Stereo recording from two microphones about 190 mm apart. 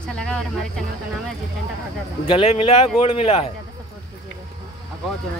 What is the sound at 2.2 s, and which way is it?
Speech, 30° left (ahead or behind).